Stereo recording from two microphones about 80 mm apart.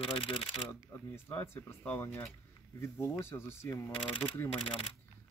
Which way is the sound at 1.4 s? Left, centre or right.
Left.